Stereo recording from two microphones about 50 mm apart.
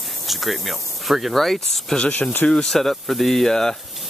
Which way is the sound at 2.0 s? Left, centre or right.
Left.